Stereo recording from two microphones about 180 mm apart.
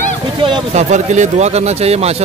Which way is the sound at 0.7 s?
40° right (ahead or behind).